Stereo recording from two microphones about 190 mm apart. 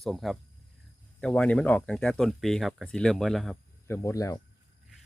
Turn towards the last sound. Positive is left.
turn(degrees=15)  # may be behind; listen again after turning